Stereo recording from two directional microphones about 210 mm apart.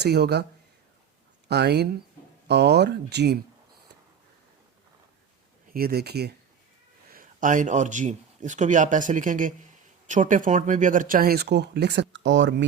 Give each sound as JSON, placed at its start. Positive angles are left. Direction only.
{"t": 0.0, "sound": "speech", "side_deg": -50}
{"t": 1.5, "sound": "speech", "side_deg": -50}
{"t": 5.7, "sound": "speech", "side_deg": -45}